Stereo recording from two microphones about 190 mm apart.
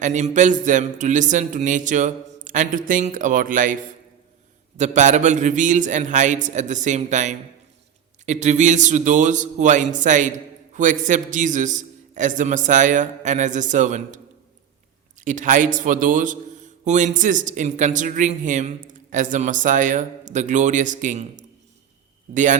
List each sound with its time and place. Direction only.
0.0 s a man's voice: 40° right (ahead or behind)
4.8 s a man's voice: 40° right (ahead or behind)
15.2 s a man's voice: 40° right (ahead or behind)